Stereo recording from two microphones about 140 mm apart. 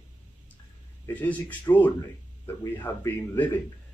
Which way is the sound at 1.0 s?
10° left (ahead or behind).